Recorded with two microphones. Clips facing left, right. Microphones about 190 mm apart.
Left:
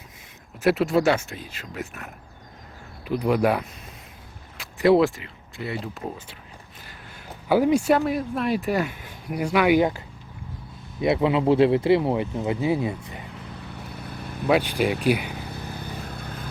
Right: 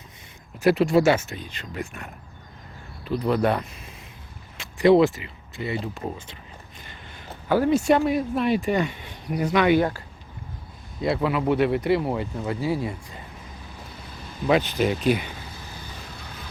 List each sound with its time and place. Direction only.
0.6 s speech: centre (ahead or behind)
3.0 s speech: 15° left (ahead or behind)
11.0 s speech: 20° left (ahead or behind)
13.4 s vehicle: 65° left (ahead or behind)
14.4 s speech: 10° left (ahead or behind)
15.3 s vehicle: 60° left (ahead or behind)